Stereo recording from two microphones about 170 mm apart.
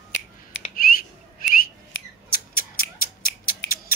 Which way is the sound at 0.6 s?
90° left.